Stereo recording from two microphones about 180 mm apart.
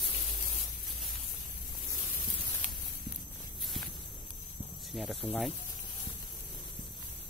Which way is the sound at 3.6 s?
Centre (ahead or behind).